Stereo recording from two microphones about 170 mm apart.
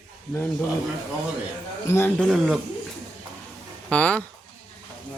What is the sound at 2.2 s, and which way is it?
Speech, centre (ahead or behind).